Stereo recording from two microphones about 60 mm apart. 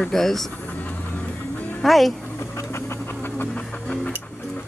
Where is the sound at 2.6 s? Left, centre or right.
Left.